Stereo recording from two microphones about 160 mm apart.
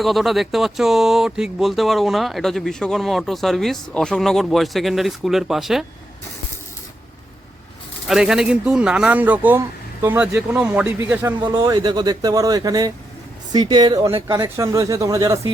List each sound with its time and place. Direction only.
0.0 s speech: centre (ahead or behind)
8.0 s speech: 5° right (ahead or behind)
11.4 s speech: 25° right (ahead or behind)
14.4 s speech: 20° right (ahead or behind)